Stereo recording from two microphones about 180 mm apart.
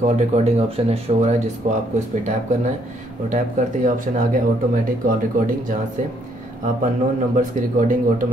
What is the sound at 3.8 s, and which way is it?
Speech, 45° right (ahead or behind).